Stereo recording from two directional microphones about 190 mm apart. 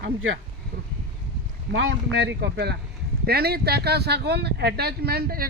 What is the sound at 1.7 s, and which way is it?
Speech, 65° right (ahead or behind).